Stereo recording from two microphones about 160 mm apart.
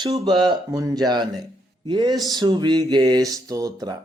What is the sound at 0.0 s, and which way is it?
Speech, 25° right (ahead or behind).